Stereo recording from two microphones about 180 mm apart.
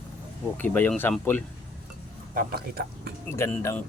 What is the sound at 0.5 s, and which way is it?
Speech, 10° left (ahead or behind).